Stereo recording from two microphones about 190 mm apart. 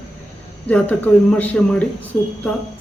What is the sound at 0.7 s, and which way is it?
Speech, 10° left (ahead or behind).